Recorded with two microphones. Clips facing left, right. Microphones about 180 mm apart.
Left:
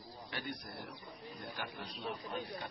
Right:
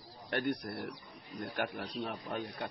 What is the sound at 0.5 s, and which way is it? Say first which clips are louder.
Speech: right 8 dB; 65° right (ahead or behind).